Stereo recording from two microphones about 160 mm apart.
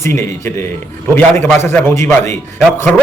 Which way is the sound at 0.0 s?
15° left (ahead or behind).